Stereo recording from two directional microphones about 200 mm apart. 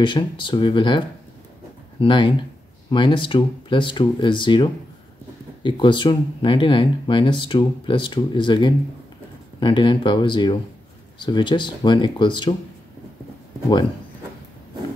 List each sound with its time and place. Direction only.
0.0 s speech: 25° left (ahead or behind)